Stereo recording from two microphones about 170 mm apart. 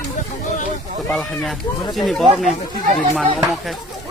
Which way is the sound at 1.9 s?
Centre (ahead or behind).